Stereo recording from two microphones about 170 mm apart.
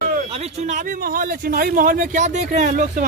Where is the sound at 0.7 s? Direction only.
55° right (ahead or behind).